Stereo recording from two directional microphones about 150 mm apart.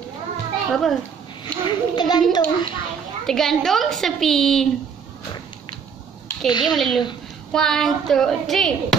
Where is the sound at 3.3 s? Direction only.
Centre (ahead or behind).